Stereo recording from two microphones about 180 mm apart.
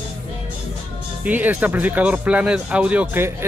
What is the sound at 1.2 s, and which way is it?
Speech, 10° right (ahead or behind).